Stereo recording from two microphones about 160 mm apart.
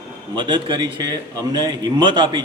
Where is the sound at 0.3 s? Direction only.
30° right (ahead or behind).